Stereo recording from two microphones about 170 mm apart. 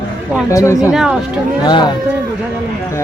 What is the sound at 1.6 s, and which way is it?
Speech, 25° left (ahead or behind).